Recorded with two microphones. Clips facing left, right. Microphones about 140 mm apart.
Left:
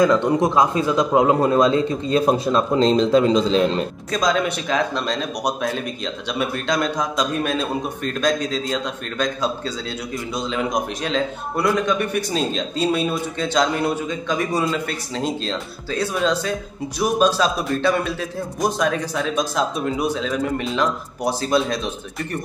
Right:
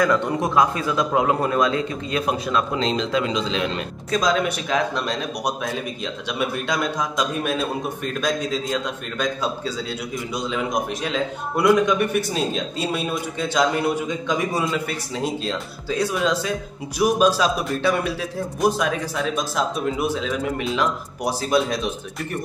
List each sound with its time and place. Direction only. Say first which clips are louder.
0.0 s a man's voice: left 4 dB; 20° left (ahead or behind); by 3.8 s 40° left (ahead or behind)
4.1 s speech: even; 5° right (ahead or behind)
10.3 s a man's voice: left 1 dB; 5° right (ahead or behind)
14.0 s a man's voice: even; 15° right (ahead or behind)
14.6 s a man's voice: left 1 dB; 5° right (ahead or behind)